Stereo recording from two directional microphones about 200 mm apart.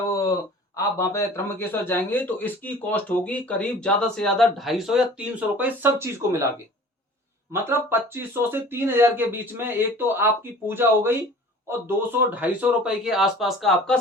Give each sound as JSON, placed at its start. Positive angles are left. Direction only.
{"t": 0.1, "sound": "a sound", "side_deg": 15}
{"t": 0.8, "sound": "a man's voice", "side_deg": 15}
{"t": 7.5, "sound": "a man's voice", "side_deg": -10}